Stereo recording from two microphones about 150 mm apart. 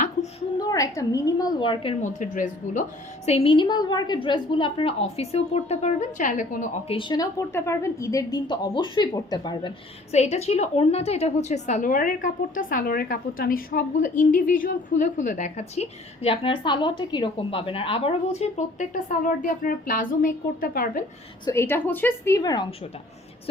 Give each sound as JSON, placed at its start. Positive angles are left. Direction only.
{"t": 0.0, "sound": "a sound", "side_deg": 50}
{"t": 0.6, "sound": "a woman's voice", "side_deg": 25}
{"t": 2.0, "sound": "a woman's voice", "side_deg": 55}
{"t": 3.2, "sound": "a woman's voice", "side_deg": 40}
{"t": 6.8, "sound": "a woman's voice", "side_deg": 35}
{"t": 10.1, "sound": "a woman's voice", "side_deg": 45}
{"t": 21.5, "sound": "a woman's voice", "side_deg": 15}